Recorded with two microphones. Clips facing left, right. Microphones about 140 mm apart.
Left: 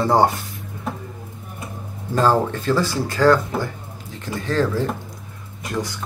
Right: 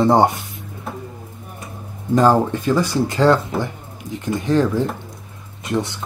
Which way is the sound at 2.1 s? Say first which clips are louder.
Right 3 dB; 15° right (ahead or behind).